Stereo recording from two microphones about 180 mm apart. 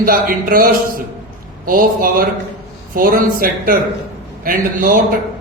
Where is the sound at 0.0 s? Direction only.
50° right (ahead or behind).